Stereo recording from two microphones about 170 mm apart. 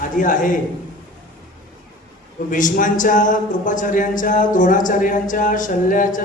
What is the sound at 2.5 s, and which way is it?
A man's voice, 50° left (ahead or behind).